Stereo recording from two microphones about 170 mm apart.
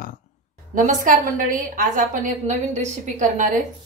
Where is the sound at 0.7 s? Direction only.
50° right (ahead or behind).